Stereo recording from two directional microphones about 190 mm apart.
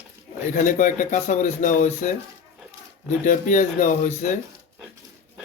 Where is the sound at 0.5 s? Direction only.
45° left (ahead or behind).